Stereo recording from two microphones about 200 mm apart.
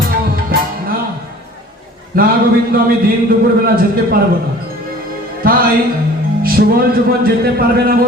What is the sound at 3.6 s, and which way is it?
Speech, 50° right (ahead or behind).